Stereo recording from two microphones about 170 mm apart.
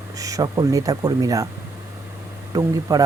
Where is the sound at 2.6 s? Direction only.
20° right (ahead or behind).